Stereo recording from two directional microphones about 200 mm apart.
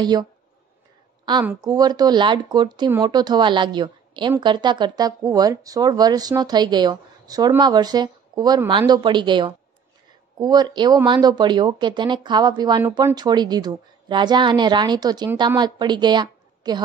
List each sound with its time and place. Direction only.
0.0 s a woman's voice: 20° right (ahead or behind)
1.4 s speech: 10° right (ahead or behind)
1.7 s a woman's voice: 20° right (ahead or behind)